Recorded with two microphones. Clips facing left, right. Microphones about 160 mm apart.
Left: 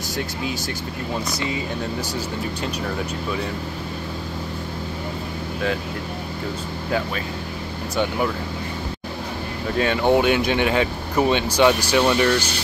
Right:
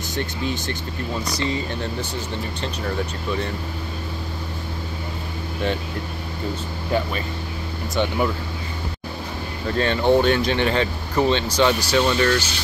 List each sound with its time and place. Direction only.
9.8 s speech: 10° left (ahead or behind)